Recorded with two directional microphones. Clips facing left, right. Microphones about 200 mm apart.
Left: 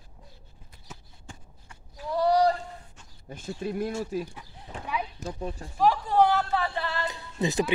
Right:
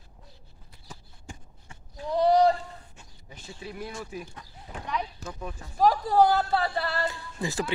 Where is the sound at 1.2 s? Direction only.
20° right (ahead or behind).